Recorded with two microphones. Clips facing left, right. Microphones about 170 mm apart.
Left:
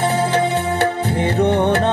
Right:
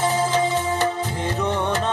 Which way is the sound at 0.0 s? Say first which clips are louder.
Left 3 dB; 65° left (ahead or behind).